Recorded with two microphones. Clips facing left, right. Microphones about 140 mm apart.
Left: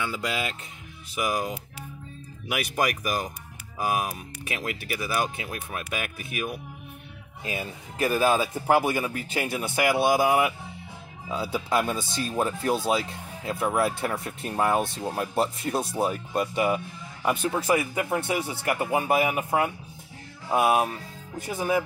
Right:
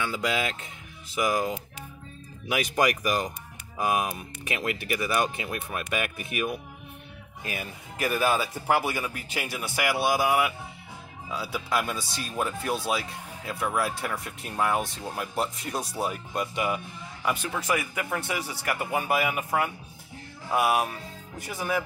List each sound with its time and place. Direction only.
0.0 s speech: 5° left (ahead or behind)
7.4 s speech: 25° left (ahead or behind)